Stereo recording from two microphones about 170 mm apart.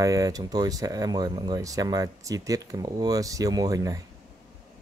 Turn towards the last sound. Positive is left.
turn(degrees=-20)  # may be behind; listen again after turning